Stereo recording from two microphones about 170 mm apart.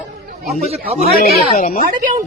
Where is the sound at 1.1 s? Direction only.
55° left (ahead or behind).